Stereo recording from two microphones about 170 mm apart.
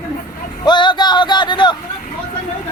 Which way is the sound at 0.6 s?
25° left (ahead or behind).